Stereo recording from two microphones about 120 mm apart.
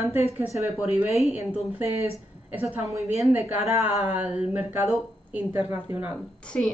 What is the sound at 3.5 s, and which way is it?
Speech, 10° right (ahead or behind).